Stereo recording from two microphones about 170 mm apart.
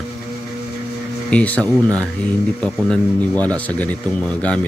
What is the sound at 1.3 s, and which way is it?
Speech, 10° left (ahead or behind).